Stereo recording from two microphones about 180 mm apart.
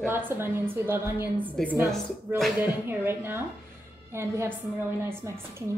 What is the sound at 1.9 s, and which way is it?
Speech, centre (ahead or behind).